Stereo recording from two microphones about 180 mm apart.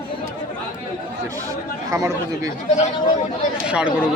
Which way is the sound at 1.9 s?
15° right (ahead or behind).